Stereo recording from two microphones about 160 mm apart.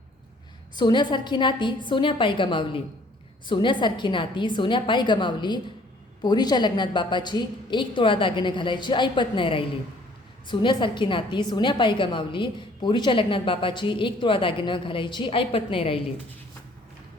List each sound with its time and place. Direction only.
0.8 s a woman's voice: 30° left (ahead or behind)